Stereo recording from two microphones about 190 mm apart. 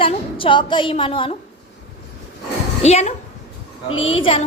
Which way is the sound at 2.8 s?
35° left (ahead or behind).